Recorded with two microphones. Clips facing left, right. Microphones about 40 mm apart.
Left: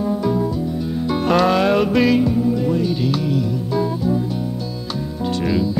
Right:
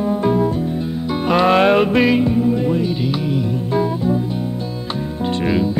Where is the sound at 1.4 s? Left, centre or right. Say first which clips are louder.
Right 3 dB; right.